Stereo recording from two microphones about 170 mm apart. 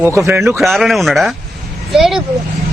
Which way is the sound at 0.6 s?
Centre (ahead or behind).